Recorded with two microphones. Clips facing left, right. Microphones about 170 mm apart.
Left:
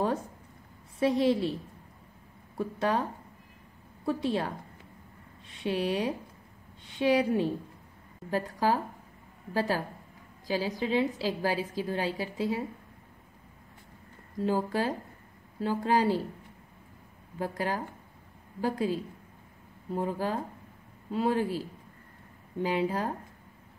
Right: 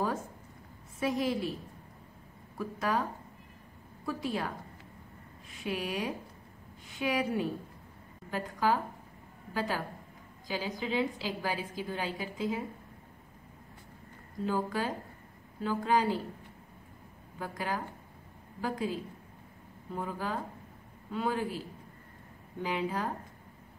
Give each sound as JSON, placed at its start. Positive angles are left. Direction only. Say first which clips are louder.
{"t": 0.9, "sound": "speech", "louder": "left 6 dB", "side_deg": 30}
{"t": 2.5, "sound": "speech", "louder": "left 3 dB", "side_deg": 30}
{"t": 5.5, "sound": "a woman's voice", "louder": "left 6 dB", "side_deg": 30}
{"t": 14.4, "sound": "a woman's voice", "louder": "left 4 dB", "side_deg": 35}
{"t": 17.4, "sound": "a woman's voice", "louder": "left 4 dB", "side_deg": 35}
{"t": 19.9, "sound": "a woman's voice", "louder": "left 5 dB", "side_deg": 35}